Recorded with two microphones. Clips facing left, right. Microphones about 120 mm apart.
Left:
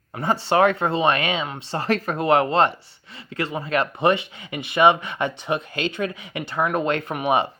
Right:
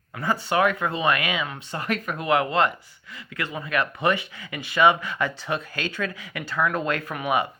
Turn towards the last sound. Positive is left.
turn(degrees=25)  # may be behind; listen again after turning